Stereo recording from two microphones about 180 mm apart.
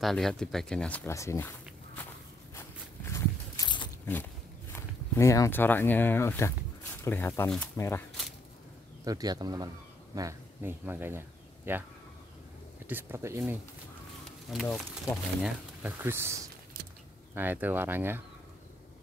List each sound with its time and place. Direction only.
0.0 s speech: centre (ahead or behind)
3.1 s walk: 15° left (ahead or behind)
3.6 s biting: 25° left (ahead or behind)
4.0 s speech: 10° left (ahead or behind)
9.0 s speech: 20° right (ahead or behind)
12.8 s speech: 15° right (ahead or behind)
14.5 s speech: centre (ahead or behind)
15.4 s speech: 10° right (ahead or behind)